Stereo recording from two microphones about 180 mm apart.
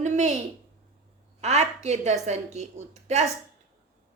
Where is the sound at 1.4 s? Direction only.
40° right (ahead or behind).